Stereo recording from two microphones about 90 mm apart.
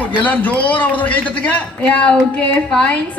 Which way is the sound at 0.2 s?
20° left (ahead or behind).